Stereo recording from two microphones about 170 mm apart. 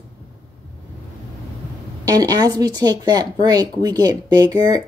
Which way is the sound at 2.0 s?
20° right (ahead or behind).